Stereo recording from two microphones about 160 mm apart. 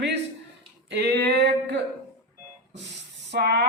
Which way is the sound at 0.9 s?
90° right.